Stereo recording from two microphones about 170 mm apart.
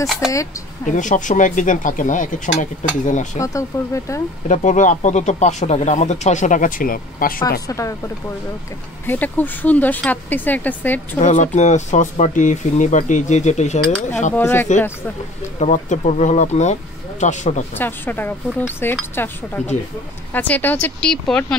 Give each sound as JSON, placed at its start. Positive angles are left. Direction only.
{"t": 0.0, "sound": "speech", "side_deg": 0}
{"t": 0.8, "sound": "speech", "side_deg": 50}
{"t": 3.3, "sound": "speech", "side_deg": 20}
{"t": 4.5, "sound": "speech", "side_deg": 45}
{"t": 7.6, "sound": "speech", "side_deg": 20}
{"t": 9.0, "sound": "speech", "side_deg": 10}
{"t": 11.1, "sound": "speech", "side_deg": 45}
{"t": 14.3, "sound": "speech", "side_deg": 15}
{"t": 15.6, "sound": "speech", "side_deg": 45}
{"t": 17.7, "sound": "speech", "side_deg": 10}